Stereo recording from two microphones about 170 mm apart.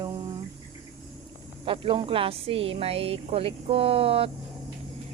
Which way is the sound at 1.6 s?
30° right (ahead or behind).